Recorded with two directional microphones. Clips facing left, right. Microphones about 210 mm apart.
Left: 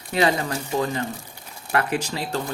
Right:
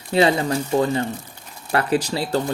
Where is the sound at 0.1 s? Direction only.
30° right (ahead or behind).